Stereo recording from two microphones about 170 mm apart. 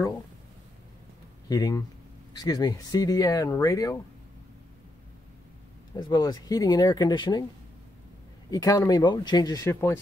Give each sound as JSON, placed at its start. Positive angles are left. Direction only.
{"t": 1.5, "sound": "speech", "side_deg": 20}
{"t": 5.9, "sound": "speech", "side_deg": 25}
{"t": 8.5, "sound": "speech", "side_deg": 20}